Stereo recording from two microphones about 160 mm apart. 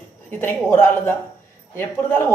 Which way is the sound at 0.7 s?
15° left (ahead or behind).